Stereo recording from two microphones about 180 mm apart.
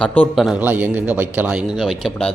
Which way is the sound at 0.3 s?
5° right (ahead or behind).